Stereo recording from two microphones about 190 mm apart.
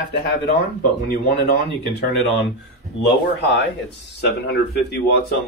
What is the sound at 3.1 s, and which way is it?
A man's voice, 65° left (ahead or behind).